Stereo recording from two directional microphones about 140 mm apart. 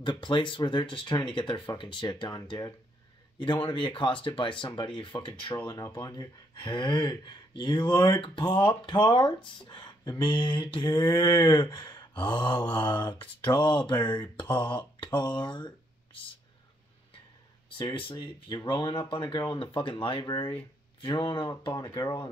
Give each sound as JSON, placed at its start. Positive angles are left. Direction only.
{"t": 0.0, "sound": "speech", "side_deg": 35}
{"t": 17.7, "sound": "speech", "side_deg": 35}